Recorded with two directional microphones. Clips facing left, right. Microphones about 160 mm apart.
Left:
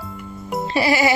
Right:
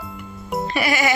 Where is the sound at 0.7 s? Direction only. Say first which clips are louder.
Left 4 dB; 30° left (ahead or behind).